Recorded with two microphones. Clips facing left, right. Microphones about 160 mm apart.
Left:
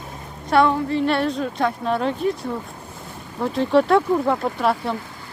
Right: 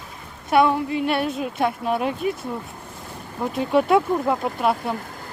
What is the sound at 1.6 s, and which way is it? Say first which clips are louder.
Speech: right 1 dB; 20° right (ahead or behind).